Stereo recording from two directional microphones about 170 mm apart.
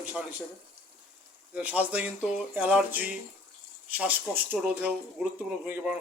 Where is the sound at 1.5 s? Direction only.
10° right (ahead or behind).